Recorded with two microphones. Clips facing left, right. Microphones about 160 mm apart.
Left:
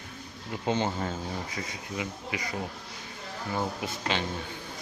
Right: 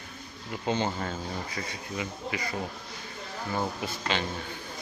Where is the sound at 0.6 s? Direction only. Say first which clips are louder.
Left 1 dB; 20° left (ahead or behind).